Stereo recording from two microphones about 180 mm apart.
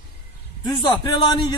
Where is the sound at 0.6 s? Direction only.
25° left (ahead or behind).